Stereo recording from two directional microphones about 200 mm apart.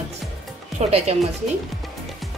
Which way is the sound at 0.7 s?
30° right (ahead or behind).